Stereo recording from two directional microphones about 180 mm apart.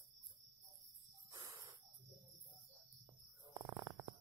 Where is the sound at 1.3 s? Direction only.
20° right (ahead or behind).